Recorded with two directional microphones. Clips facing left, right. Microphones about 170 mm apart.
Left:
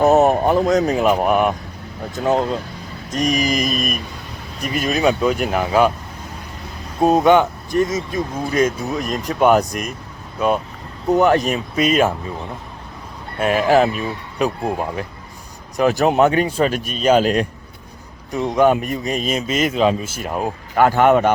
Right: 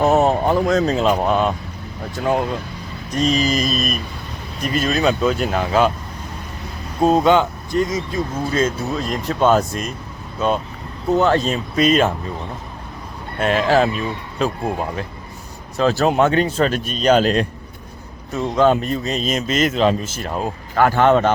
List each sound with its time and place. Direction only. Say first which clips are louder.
0.0 s a man's voice: left 2 dB; 20° left (ahead or behind)
7.0 s a man's voice: left 1 dB; 15° left (ahead or behind)
11.1 s a man's voice: left 1 dB; 15° left (ahead or behind)
13.4 s a man's voice: left 1 dB; 10° left (ahead or behind)
15.8 s a man's voice: left 1 dB; 15° left (ahead or behind)